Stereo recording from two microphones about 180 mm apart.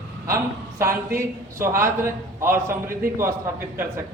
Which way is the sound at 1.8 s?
15° right (ahead or behind).